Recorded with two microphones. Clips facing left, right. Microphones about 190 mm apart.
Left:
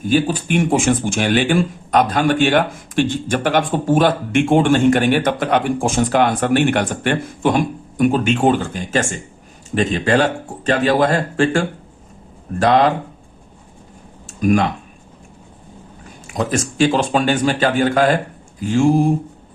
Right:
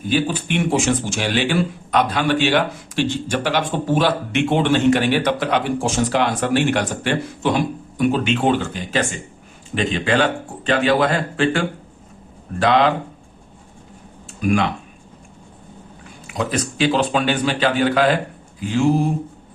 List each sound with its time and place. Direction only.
0.0 s speech: 45° left (ahead or behind)
14.3 s a sound: 45° left (ahead or behind)
16.2 s speech: 45° left (ahead or behind)